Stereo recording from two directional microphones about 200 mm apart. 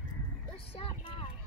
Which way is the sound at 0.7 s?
30° left (ahead or behind).